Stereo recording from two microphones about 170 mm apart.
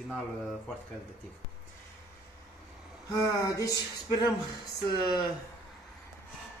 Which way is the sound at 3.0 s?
20° left (ahead or behind).